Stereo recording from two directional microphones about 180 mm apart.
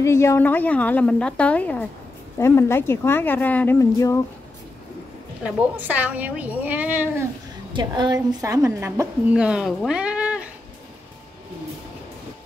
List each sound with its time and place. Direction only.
0.0 s a woman's voice: 15° left (ahead or behind)
5.4 s a woman's voice: 10° right (ahead or behind)
7.7 s a woman's voice: 25° right (ahead or behind)
9.3 s speech: 5° right (ahead or behind)